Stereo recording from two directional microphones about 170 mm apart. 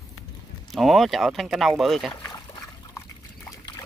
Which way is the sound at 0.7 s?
Centre (ahead or behind).